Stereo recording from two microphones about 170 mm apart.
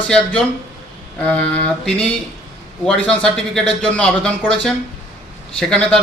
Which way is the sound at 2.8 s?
5° left (ahead or behind).